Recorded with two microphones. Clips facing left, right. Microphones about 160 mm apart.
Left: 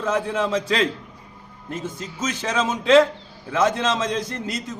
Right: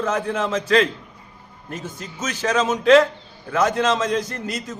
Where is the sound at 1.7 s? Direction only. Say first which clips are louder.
Left 2 dB; 25° left (ahead or behind).